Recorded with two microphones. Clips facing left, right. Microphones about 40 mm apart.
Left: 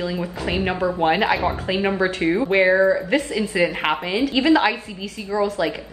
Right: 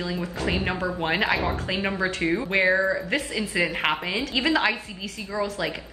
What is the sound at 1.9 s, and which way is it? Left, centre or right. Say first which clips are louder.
Speech: left 3 dB; left.